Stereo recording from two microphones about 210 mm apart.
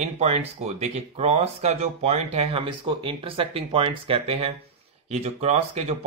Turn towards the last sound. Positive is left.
turn(degrees=-30)  # may be behind; listen again after turning